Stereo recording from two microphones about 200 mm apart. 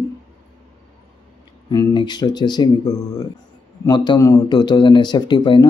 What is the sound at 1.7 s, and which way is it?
Speech, 20° left (ahead or behind).